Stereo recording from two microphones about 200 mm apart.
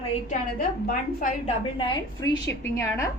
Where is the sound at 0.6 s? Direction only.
45° left (ahead or behind).